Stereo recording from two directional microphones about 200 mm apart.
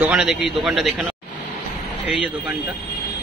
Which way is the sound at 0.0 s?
5° right (ahead or behind).